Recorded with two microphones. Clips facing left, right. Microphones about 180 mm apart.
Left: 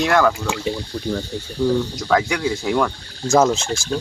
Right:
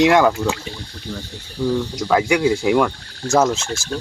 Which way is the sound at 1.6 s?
Centre (ahead or behind).